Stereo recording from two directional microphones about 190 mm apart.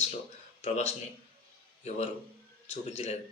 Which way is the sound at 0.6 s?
35° left (ahead or behind).